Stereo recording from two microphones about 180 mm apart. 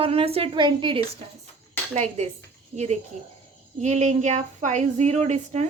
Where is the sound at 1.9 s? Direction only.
35° right (ahead or behind).